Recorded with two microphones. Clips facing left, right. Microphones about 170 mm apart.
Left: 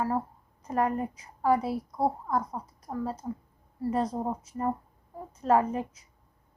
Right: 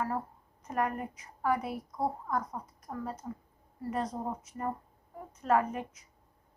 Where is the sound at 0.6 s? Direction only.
30° left (ahead or behind).